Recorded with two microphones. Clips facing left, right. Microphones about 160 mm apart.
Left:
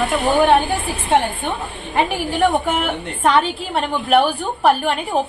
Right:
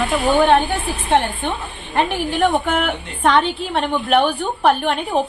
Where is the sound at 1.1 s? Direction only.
5° left (ahead or behind).